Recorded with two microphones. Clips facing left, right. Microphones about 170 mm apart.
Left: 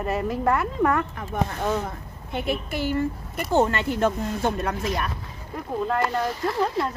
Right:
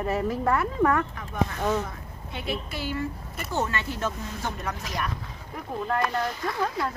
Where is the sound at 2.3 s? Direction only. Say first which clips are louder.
Left 5 dB; 50° left (ahead or behind).